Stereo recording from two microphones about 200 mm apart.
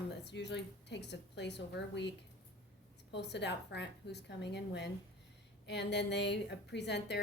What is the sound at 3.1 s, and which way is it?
A woman's voice, 60° left (ahead or behind).